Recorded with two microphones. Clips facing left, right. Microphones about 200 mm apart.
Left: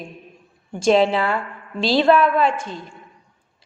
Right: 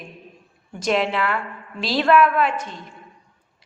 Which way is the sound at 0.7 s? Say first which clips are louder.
Left 6 dB; 30° left (ahead or behind).